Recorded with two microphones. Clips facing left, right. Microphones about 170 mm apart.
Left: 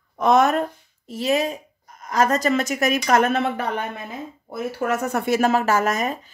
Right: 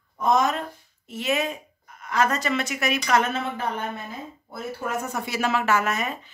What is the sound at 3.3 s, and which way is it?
A woman's voice, 70° left (ahead or behind).